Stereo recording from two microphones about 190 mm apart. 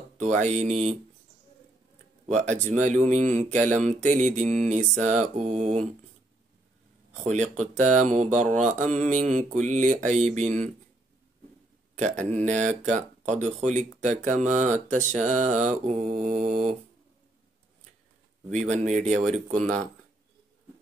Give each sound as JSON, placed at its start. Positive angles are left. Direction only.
{"t": 0.2, "sound": "speech", "side_deg": -40}
{"t": 2.3, "sound": "speech", "side_deg": -40}
{"t": 7.2, "sound": "speech", "side_deg": -40}
{"t": 12.0, "sound": "speech", "side_deg": -40}
{"t": 18.5, "sound": "speech", "side_deg": -40}